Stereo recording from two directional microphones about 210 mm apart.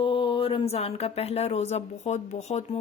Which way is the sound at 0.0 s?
25° left (ahead or behind).